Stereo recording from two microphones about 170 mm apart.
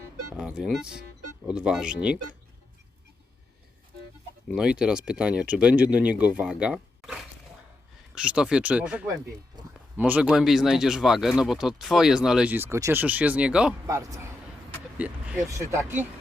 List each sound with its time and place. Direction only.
0.3 s speech: 5° right (ahead or behind)
4.4 s speech: 5° right (ahead or behind)
13.8 s speech: 20° right (ahead or behind)
14.9 s vehicle: 5° right (ahead or behind)
15.4 s speech: 15° right (ahead or behind)